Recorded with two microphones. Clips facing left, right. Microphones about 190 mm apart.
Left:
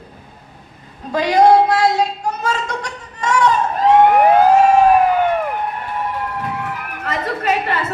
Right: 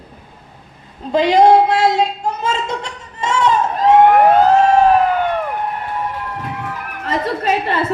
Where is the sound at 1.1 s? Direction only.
25° right (ahead or behind).